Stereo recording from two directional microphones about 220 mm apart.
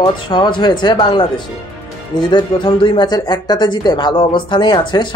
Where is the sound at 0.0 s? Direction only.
20° left (ahead or behind).